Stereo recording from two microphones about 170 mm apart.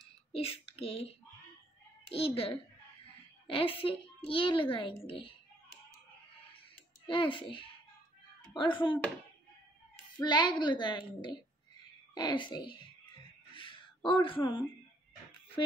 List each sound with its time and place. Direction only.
0.3 s a child's voice: 35° left (ahead or behind)
2.1 s a woman's voice: 35° left (ahead or behind)
7.1 s a woman's voice: 30° left (ahead or behind)
10.2 s a woman's voice: 25° left (ahead or behind)
13.6 s gasp: 30° left (ahead or behind)